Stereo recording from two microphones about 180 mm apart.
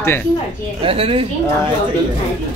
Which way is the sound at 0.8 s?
30° right (ahead or behind).